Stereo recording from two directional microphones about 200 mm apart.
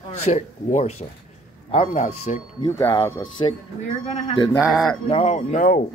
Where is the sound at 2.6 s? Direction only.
15° left (ahead or behind).